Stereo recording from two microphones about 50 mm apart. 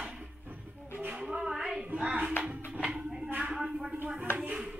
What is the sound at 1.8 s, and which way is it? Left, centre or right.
Music, right.